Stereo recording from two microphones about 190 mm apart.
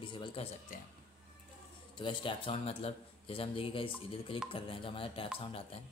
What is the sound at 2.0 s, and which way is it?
Speech, 25° left (ahead or behind).